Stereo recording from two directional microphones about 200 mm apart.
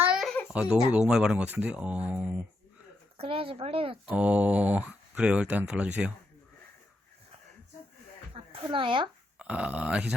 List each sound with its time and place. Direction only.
0.0 s baby cry: 5° right (ahead or behind)
0.5 s speech: 5° right (ahead or behind)
3.2 s a woman's voice: 30° right (ahead or behind)
4.0 s speech: 5° right (ahead or behind)
8.3 s a sound: 25° right (ahead or behind)
9.4 s speech: 5° right (ahead or behind)